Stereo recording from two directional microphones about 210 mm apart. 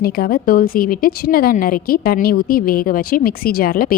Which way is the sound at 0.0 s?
45° left (ahead or behind).